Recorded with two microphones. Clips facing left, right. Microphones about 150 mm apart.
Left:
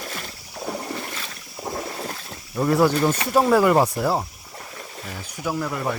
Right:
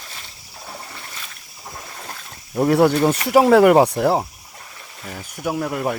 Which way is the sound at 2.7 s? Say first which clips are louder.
Right 3 dB; 60° right (ahead or behind).